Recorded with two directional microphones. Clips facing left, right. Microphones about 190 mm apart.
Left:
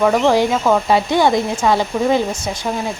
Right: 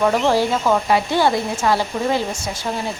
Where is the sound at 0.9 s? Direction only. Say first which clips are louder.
Left 3 dB; 20° left (ahead or behind).